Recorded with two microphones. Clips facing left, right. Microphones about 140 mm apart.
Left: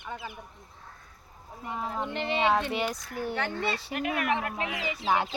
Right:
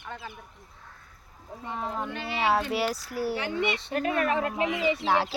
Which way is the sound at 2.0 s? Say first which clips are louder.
Left 3 dB; 20° left (ahead or behind).